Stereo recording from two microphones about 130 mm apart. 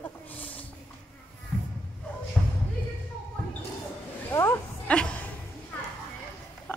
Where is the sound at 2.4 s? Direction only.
Centre (ahead or behind).